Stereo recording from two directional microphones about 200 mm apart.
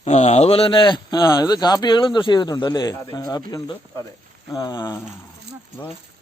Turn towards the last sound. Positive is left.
turn(degrees=15)  # may be behind; listen again after turning